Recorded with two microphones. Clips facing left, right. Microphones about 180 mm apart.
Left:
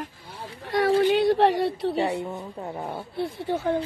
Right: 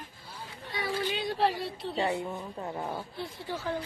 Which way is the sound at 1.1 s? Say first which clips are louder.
Left 10 dB; 70° left (ahead or behind).